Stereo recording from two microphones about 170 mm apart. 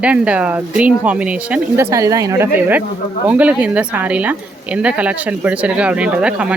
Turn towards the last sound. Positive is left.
turn(degrees=-5)  # may be behind; listen again after turning